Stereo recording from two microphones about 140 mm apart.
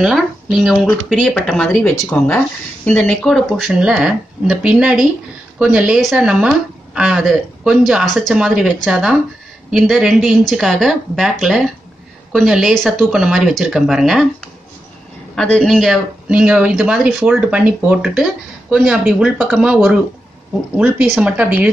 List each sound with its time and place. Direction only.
0.0 s speech: centre (ahead or behind)
15.3 s speech: 5° left (ahead or behind); by 21.6 s 10° right (ahead or behind)